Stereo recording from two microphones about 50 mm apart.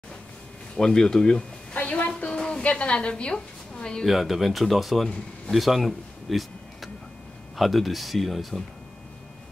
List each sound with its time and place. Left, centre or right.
0.7 s speech: centre
1.8 s a sound: left
4.0 s speech: centre